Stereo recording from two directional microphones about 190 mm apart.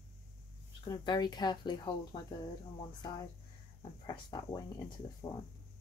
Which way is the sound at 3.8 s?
25° left (ahead or behind).